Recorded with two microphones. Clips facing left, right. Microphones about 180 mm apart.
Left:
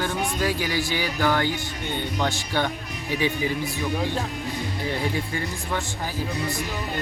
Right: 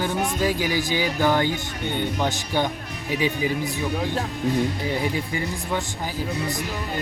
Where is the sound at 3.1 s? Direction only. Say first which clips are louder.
Right 1 dB; 15° right (ahead or behind).